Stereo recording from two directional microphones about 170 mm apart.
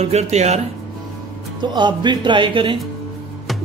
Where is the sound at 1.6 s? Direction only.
25° right (ahead or behind).